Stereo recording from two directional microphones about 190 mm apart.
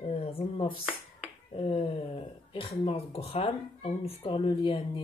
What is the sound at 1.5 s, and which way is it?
Speech, 30° left (ahead or behind).